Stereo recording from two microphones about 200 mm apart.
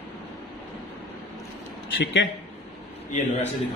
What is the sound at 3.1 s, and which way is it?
Speech, 35° left (ahead or behind).